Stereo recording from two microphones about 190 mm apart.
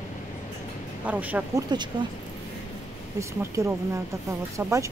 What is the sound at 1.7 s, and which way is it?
Speech, 25° right (ahead or behind).